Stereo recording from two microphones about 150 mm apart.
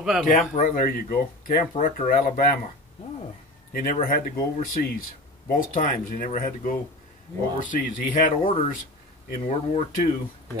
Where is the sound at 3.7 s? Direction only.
70° left (ahead or behind).